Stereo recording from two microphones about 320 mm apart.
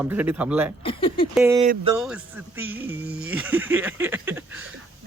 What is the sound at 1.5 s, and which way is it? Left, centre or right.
Speech, centre.